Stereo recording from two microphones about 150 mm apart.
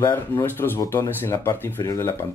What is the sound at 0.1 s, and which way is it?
Speech, 15° left (ahead or behind).